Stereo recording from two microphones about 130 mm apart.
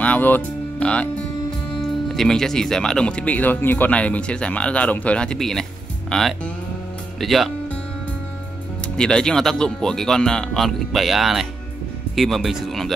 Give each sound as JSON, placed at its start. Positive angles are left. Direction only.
{"t": 0.0, "sound": "speech", "side_deg": 10}
{"t": 8.9, "sound": "speech", "side_deg": 5}